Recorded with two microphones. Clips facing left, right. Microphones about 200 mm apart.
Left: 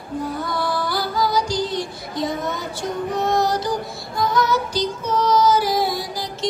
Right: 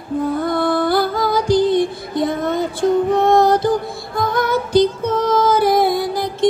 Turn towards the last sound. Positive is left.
turn(degrees=-55)  # may be behind; listen again after turning